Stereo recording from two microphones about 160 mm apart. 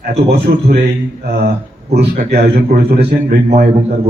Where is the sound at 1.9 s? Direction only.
90° right.